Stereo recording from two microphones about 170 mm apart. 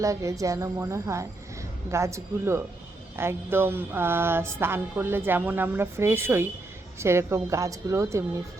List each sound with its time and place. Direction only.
0.0 s speech: 20° right (ahead or behind)